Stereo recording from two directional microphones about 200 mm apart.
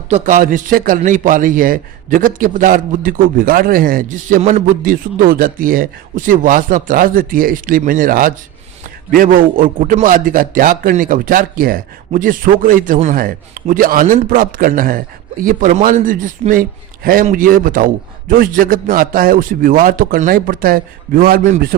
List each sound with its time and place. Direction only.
0.1 s a man's voice: 40° right (ahead or behind)